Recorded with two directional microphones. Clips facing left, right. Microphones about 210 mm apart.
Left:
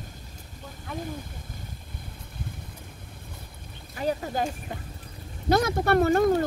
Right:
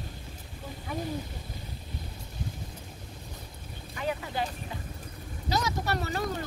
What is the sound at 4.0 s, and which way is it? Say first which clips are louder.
Speech: left 4 dB; 40° left (ahead or behind).